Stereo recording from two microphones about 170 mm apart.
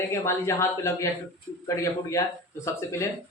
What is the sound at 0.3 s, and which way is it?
Speech, 15° left (ahead or behind).